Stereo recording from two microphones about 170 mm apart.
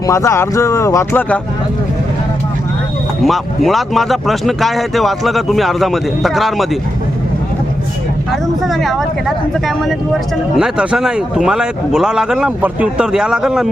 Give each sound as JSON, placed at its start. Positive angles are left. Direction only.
{"t": 0.1, "sound": "speech", "side_deg": 15}
{"t": 3.2, "sound": "speech", "side_deg": 0}
{"t": 8.6, "sound": "speech", "side_deg": 0}
{"t": 10.6, "sound": "speech", "side_deg": -5}